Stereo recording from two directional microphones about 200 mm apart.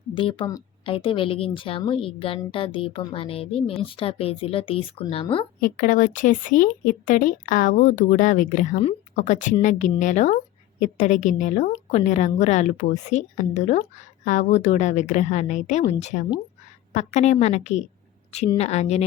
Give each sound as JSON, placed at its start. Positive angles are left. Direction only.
{"t": 0.1, "sound": "speech", "side_deg": 25}
{"t": 5.5, "sound": "a woman's voice", "side_deg": 45}